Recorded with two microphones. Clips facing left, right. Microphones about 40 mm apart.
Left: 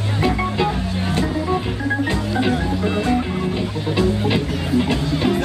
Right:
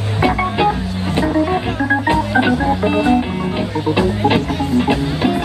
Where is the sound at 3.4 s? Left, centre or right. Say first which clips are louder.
Right 4 dB; right.